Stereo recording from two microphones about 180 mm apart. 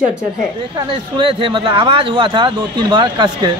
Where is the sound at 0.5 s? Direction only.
25° right (ahead or behind).